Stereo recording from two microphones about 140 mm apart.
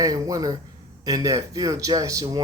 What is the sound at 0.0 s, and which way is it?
Speech, 25° right (ahead or behind).